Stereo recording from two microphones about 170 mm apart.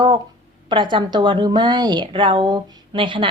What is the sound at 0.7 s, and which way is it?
A woman's voice, 30° right (ahead or behind).